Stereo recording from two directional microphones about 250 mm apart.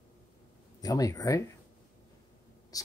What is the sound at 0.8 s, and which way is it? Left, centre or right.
Speech, centre.